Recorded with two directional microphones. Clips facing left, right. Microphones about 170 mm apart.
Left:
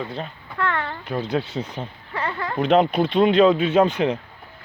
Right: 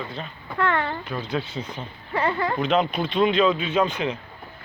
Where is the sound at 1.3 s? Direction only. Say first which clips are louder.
Left 3 dB; 65° left (ahead or behind).